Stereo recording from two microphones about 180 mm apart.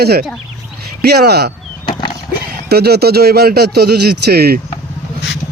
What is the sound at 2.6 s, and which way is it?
A man's voice, 65° right (ahead or behind).